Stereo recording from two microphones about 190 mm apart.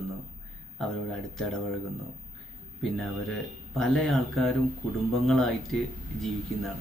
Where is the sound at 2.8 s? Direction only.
Centre (ahead or behind).